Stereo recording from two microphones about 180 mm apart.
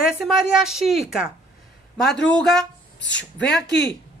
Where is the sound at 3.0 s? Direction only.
90° left.